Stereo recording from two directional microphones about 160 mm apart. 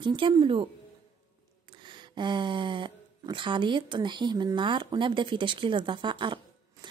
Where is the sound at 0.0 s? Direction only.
30° right (ahead or behind).